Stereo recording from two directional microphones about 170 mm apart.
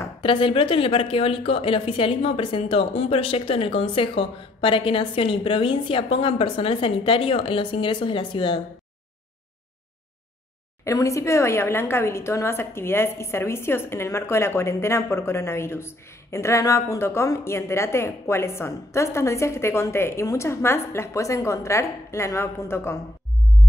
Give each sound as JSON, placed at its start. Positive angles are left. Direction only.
{"t": 0.2, "sound": "speech", "side_deg": 30}
{"t": 10.8, "sound": "a woman's voice", "side_deg": 20}